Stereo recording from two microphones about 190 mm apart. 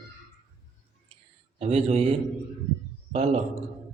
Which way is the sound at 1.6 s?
35° right (ahead or behind).